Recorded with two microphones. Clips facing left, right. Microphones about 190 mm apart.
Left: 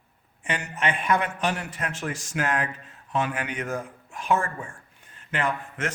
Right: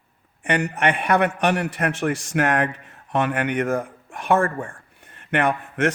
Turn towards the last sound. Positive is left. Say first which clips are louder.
# right 7 dB
turn(degrees=-70)  # may be behind; listen again after turning